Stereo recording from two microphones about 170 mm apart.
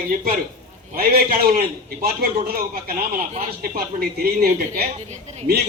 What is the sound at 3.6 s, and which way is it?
Speech, 65° right (ahead or behind).